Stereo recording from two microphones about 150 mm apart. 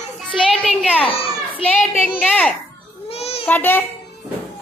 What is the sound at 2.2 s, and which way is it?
Speech, 10° left (ahead or behind).